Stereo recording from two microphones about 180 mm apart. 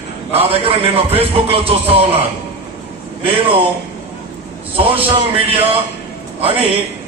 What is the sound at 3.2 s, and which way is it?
Speech, 30° right (ahead or behind).